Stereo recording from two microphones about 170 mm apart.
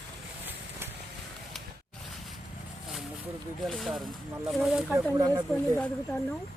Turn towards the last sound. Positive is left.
turn(degrees=-25)  # may be behind; listen again after turning